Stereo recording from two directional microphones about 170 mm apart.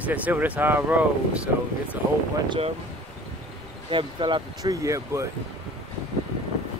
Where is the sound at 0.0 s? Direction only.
10° right (ahead or behind).